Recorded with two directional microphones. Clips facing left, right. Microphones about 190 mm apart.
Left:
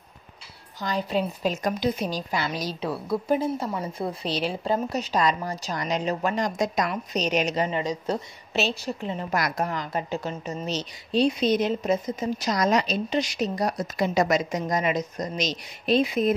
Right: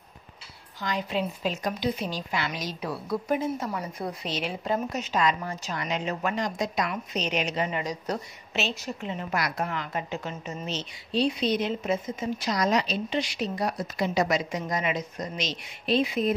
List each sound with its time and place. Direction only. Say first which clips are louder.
0.7 s a woman's voice: left 3 dB; 35° left (ahead or behind)